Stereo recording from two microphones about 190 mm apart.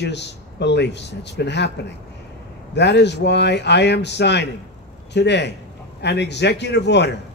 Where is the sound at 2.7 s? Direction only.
65° left (ahead or behind).